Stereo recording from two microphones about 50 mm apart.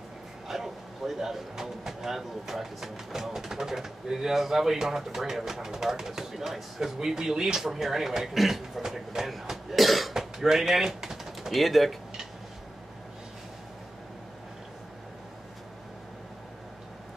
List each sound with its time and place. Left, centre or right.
0.5 s speech: centre